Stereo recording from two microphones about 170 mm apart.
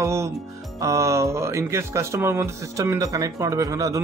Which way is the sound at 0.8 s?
20° right (ahead or behind).